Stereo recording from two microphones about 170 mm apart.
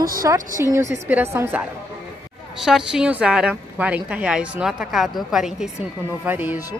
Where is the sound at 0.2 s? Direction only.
20° right (ahead or behind).